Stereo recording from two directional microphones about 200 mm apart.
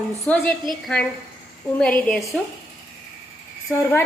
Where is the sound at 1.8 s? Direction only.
5° left (ahead or behind).